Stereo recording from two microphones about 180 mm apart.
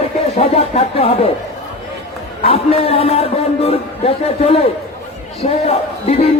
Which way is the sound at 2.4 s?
35° left (ahead or behind).